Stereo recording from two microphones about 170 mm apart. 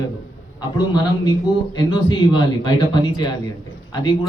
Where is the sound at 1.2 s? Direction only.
25° left (ahead or behind).